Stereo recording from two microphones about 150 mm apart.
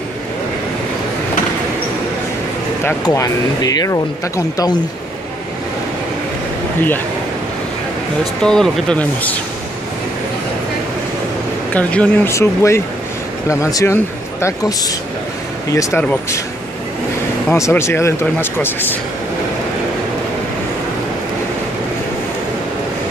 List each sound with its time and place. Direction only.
3.1 s speech: 25° left (ahead or behind)
8.4 s speech: 5° left (ahead or behind)
11.7 s speech: 10° left (ahead or behind)
16.0 s speech: 10° left (ahead or behind)
17.5 s speech: 20° left (ahead or behind)